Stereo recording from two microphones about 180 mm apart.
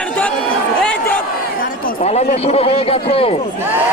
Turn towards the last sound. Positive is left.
turn(degrees=30)  # may be behind; listen again after turning